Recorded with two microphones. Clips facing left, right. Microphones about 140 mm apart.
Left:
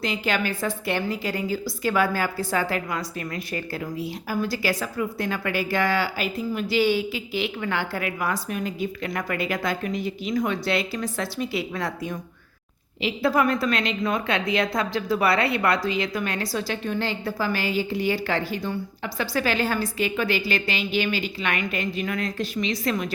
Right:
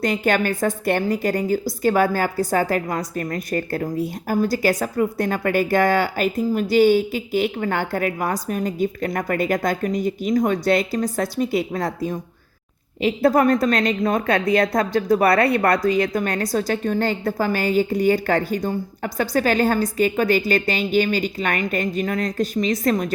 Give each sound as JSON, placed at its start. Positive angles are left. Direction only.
{"t": 0.0, "sound": "a woman's voice", "side_deg": -45}